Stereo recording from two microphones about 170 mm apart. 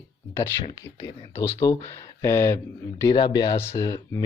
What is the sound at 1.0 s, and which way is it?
Speech, 20° left (ahead or behind).